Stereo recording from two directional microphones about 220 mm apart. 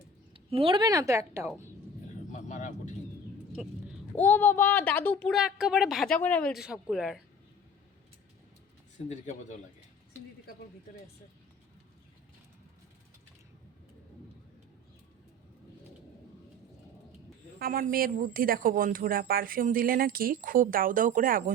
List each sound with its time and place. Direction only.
0.3 s a woman's voice: 25° right (ahead or behind)
2.3 s vehicle: 35° left (ahead or behind)
3.5 s speech: 5° right (ahead or behind)
4.1 s speech: 10° left (ahead or behind)
9.0 s speech: 35° left (ahead or behind)
17.6 s speech: 40° right (ahead or behind)